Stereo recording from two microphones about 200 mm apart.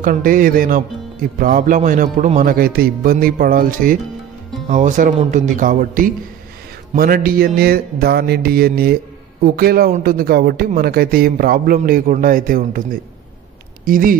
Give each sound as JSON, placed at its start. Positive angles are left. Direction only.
{"t": 0.0, "sound": "music", "side_deg": -45}
{"t": 4.6, "sound": "speech", "side_deg": -40}
{"t": 7.0, "sound": "music", "side_deg": -45}